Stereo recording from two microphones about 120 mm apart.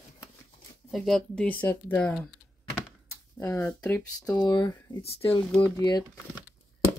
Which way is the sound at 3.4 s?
15° left (ahead or behind).